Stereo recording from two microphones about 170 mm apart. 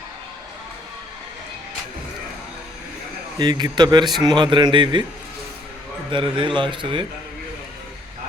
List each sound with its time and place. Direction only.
3.3 s a man's voice: 25° right (ahead or behind)
6.1 s a man's voice: 30° right (ahead or behind)